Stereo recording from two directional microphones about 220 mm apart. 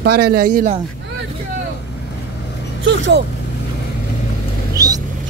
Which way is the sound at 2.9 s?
55° right (ahead or behind).